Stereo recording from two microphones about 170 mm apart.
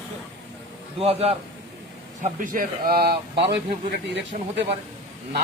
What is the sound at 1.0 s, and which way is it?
Speech, 35° right (ahead or behind).